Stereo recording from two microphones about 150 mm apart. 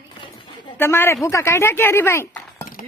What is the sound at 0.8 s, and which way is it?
Speech, 15° left (ahead or behind).